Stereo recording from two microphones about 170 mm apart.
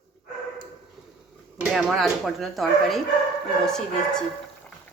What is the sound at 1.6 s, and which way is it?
Speech, 5° right (ahead or behind).